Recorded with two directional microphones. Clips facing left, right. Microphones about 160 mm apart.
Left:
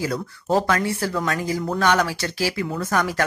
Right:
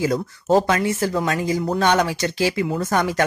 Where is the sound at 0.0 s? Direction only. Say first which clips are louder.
Right 4 dB; 20° right (ahead or behind).